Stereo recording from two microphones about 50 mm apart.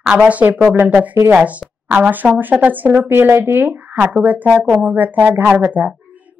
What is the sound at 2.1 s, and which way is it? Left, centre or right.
A woman's voice, right.